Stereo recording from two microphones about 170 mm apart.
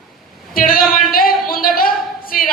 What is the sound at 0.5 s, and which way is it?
Speech, 55° left (ahead or behind).